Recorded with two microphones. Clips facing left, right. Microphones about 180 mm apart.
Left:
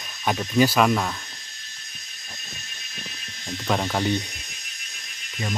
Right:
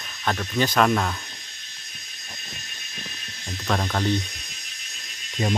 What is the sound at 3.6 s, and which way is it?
Speech, 10° left (ahead or behind).